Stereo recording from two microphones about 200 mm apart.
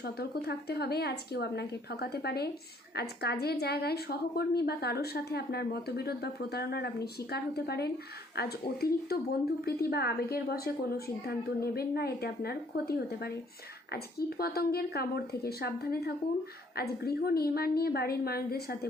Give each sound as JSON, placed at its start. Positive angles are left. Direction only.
{"t": 0.0, "sound": "a woman's voice", "side_deg": 50}